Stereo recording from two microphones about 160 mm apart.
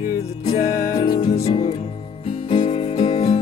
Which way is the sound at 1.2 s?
35° left (ahead or behind).